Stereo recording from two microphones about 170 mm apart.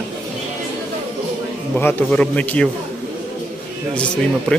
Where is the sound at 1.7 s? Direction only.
10° left (ahead or behind).